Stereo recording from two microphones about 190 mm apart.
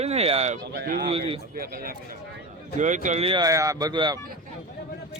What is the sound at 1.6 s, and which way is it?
Speech, 50° right (ahead or behind).